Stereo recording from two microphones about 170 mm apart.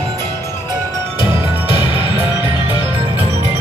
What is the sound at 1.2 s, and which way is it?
Music, 30° left (ahead or behind).